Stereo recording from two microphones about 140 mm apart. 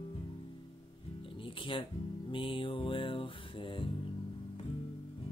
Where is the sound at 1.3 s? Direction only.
40° left (ahead or behind).